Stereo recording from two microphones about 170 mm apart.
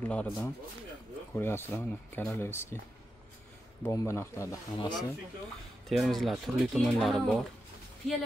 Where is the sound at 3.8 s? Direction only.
15° left (ahead or behind).